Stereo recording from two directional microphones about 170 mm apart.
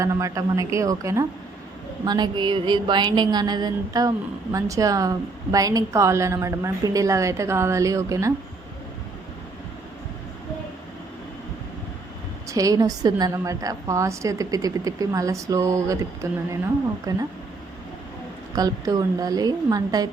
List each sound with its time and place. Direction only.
0.0 s a woman's voice: 20° right (ahead or behind)
12.5 s a woman's voice: 20° right (ahead or behind)
18.5 s a woman's voice: 20° right (ahead or behind)